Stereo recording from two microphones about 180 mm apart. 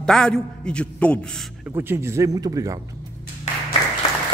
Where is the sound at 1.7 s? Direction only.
15° right (ahead or behind).